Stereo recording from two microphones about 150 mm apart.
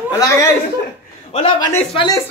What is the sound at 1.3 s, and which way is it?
Speech, 40° left (ahead or behind).